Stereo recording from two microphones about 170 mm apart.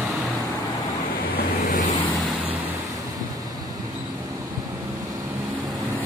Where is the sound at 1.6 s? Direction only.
45° left (ahead or behind).